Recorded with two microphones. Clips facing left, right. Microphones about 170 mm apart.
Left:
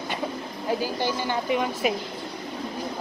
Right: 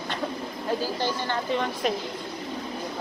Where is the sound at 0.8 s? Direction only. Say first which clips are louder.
Left 1 dB; 10° left (ahead or behind).